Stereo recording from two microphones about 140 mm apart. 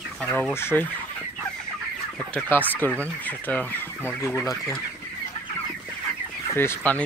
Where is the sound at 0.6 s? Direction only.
15° left (ahead or behind).